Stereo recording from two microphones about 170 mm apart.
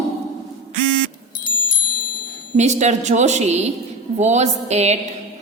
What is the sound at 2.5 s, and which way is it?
A woman's voice, 45° right (ahead or behind).